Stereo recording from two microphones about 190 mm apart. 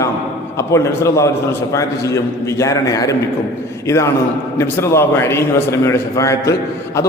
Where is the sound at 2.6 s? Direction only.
15° left (ahead or behind).